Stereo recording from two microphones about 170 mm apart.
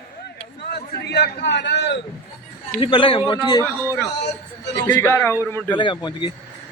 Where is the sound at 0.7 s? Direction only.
80° left.